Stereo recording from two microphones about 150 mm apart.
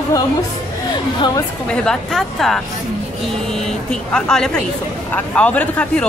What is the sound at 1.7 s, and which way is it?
Speech, 5° left (ahead or behind).